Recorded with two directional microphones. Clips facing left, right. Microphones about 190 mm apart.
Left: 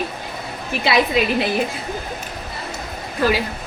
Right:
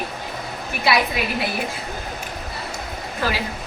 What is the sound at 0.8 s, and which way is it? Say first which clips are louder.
Speech: left 3 dB; 25° left (ahead or behind).